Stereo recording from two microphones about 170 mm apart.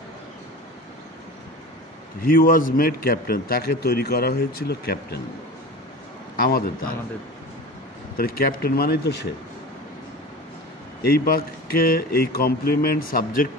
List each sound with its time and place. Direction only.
2.2 s a man's voice: 55° left (ahead or behind)
6.3 s a man's voice: 60° left (ahead or behind)
8.2 s a man's voice: 60° left (ahead or behind)
11.0 s a man's voice: 60° left (ahead or behind)